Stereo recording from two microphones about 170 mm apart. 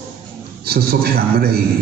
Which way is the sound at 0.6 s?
65° right (ahead or behind).